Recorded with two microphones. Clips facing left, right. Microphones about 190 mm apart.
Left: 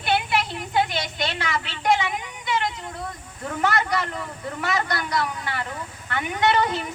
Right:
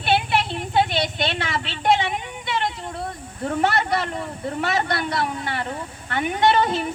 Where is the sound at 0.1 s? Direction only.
25° right (ahead or behind).